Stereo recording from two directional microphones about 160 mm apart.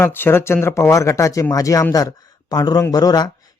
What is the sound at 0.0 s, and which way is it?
Speech, 15° left (ahead or behind).